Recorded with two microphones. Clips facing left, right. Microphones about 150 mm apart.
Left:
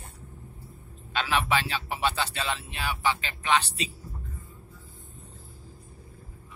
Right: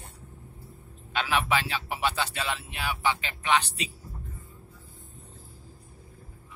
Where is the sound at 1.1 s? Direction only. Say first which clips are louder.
Even; 15° right (ahead or behind).